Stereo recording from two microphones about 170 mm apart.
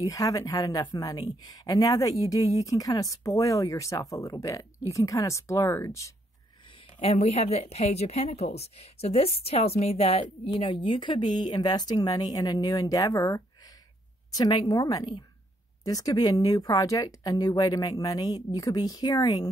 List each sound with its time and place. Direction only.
0.0 s speech: 20° left (ahead or behind)
7.0 s a woman's voice: 35° left (ahead or behind); by 19.5 s 20° left (ahead or behind)